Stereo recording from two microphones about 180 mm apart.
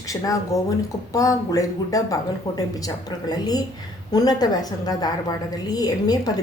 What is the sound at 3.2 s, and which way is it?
A woman's voice, 20° left (ahead or behind).